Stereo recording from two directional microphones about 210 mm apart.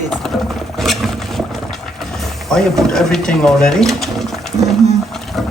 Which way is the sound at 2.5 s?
Centre (ahead or behind).